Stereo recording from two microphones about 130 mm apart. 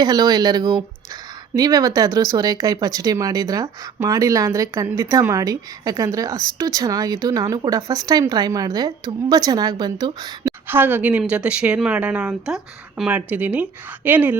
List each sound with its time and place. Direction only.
0.0 s a woman's voice: 30° right (ahead or behind)
10.7 s speech: 15° right (ahead or behind)